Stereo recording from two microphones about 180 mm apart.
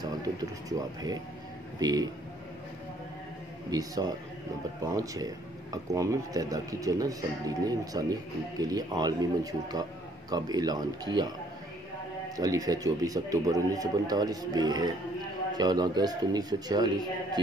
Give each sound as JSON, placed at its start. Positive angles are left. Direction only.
{"t": 0.0, "sound": "speech", "side_deg": -20}
{"t": 3.7, "sound": "speech", "side_deg": -20}
{"t": 12.4, "sound": "speech", "side_deg": -20}